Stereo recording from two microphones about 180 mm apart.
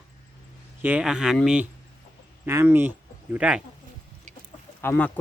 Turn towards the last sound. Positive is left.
turn(degrees=10)  # may be behind; listen again after turning